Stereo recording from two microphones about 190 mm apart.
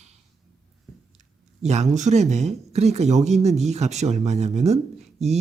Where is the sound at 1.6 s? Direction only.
35° right (ahead or behind).